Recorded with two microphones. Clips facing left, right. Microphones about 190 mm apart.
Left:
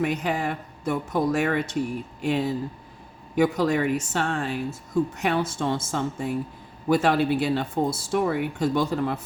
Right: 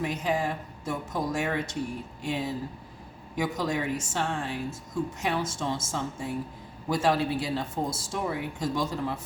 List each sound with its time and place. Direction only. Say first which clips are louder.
0.0 s speech: left 3 dB; 65° left (ahead or behind)